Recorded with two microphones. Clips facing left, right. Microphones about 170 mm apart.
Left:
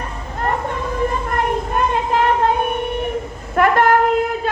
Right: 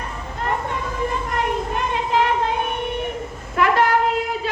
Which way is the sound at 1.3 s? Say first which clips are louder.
Left 3 dB; 50° left (ahead or behind).